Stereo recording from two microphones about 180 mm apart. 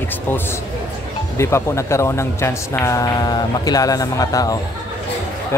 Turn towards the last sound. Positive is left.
turn(degrees=20)  # may be behind; listen again after turning